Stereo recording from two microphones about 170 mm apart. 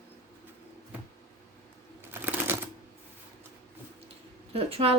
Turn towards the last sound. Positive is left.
turn(degrees=-35)  # may be behind; listen again after turning